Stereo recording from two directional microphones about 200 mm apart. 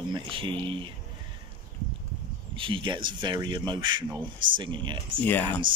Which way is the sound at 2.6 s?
25° right (ahead or behind).